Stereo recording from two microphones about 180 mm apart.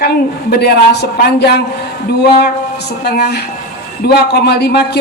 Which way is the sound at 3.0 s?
65° left (ahead or behind).